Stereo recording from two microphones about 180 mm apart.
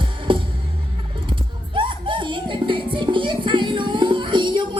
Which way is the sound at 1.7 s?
30° right (ahead or behind).